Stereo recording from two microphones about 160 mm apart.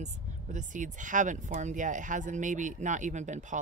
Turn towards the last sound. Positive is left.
turn(degrees=-50)  # may be behind; listen again after turning